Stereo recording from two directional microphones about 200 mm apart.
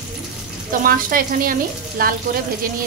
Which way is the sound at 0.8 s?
45° right (ahead or behind).